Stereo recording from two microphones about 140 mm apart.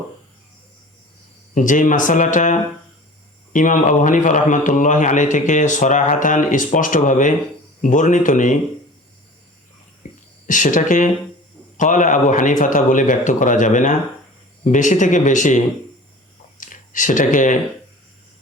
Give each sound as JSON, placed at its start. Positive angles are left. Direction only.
{"t": 1.5, "sound": "a man's voice", "side_deg": 65}
{"t": 10.0, "sound": "a sound", "side_deg": 65}
{"t": 11.8, "sound": "a man's voice", "side_deg": 65}